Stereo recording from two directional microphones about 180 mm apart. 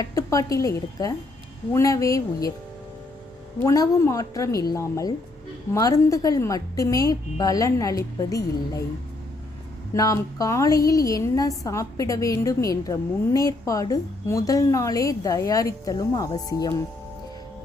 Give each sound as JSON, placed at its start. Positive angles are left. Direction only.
{"t": 0.0, "sound": "a woman's voice", "side_deg": 20}
{"t": 3.6, "sound": "a woman's voice", "side_deg": 15}
{"t": 9.9, "sound": "a woman's voice", "side_deg": 20}